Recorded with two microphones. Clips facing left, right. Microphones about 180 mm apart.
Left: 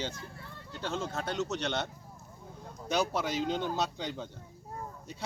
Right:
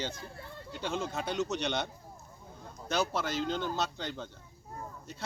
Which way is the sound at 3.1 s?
Centre (ahead or behind).